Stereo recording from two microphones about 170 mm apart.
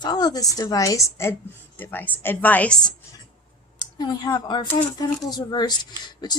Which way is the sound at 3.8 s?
25° left (ahead or behind).